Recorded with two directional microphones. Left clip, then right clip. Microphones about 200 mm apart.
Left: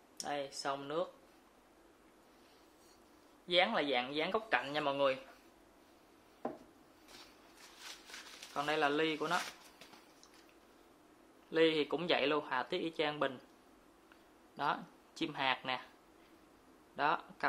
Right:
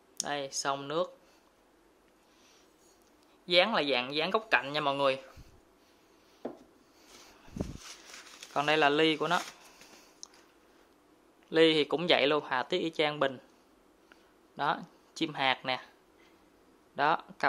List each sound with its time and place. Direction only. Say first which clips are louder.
0.2 s speech: right 6 dB; 45° right (ahead or behind)
3.4 s speech: right 6 dB; 45° right (ahead or behind)
8.5 s speech: right 8 dB; 45° right (ahead or behind)
11.5 s speech: right 7 dB; 35° right (ahead or behind)
14.6 s speech: right 5 dB; 30° right (ahead or behind)
16.9 s speech: right 6 dB; 35° right (ahead or behind)